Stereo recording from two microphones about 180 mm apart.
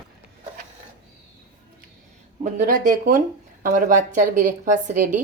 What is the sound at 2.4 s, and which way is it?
A woman's voice, 45° right (ahead or behind).